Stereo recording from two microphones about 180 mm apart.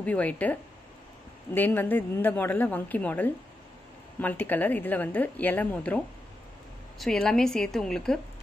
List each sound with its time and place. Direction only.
0.0 s a woman's voice: 10° left (ahead or behind)